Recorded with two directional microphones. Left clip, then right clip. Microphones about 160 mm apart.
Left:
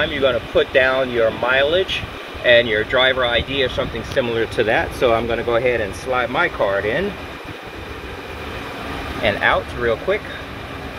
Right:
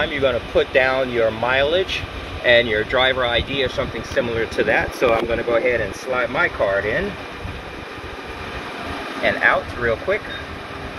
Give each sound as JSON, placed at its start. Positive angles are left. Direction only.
{"t": 0.0, "sound": "speech", "side_deg": 0}
{"t": 4.4, "sound": "speech", "side_deg": 25}
{"t": 9.2, "sound": "speech", "side_deg": 25}